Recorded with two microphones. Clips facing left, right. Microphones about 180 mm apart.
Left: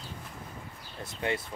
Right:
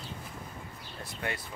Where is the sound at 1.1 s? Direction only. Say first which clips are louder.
Left 5 dB; 20° left (ahead or behind).